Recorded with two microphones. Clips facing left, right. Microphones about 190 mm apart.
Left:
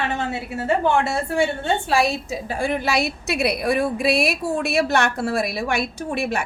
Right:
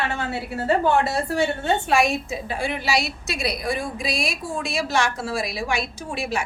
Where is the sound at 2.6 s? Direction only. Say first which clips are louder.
Left 3 dB; 50° left (ahead or behind).